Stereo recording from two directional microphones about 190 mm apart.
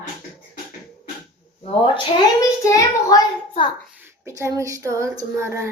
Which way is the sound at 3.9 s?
10° right (ahead or behind).